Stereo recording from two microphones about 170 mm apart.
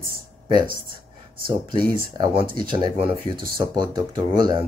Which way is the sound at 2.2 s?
30° right (ahead or behind).